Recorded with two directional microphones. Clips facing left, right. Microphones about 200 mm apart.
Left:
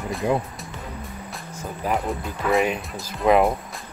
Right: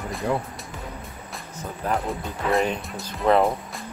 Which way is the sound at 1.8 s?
Centre (ahead or behind).